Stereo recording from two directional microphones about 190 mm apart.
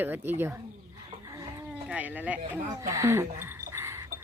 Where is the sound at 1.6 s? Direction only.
5° right (ahead or behind).